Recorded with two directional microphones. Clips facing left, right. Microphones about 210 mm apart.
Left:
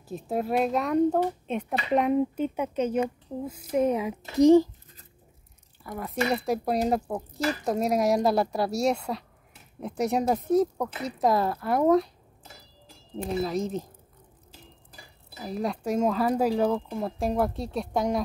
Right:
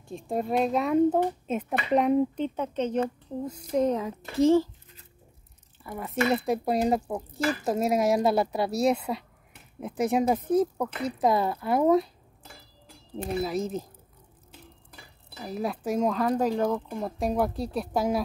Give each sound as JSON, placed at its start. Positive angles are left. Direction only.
{"t": 0.1, "sound": "a child's voice", "side_deg": 5}
{"t": 5.9, "sound": "a child's voice", "side_deg": 0}
{"t": 13.4, "sound": "a child's voice", "side_deg": -5}
{"t": 14.5, "sound": "dishes", "side_deg": -60}
{"t": 15.4, "sound": "a child's voice", "side_deg": -5}